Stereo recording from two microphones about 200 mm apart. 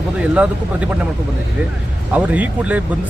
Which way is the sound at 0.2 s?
5° right (ahead or behind).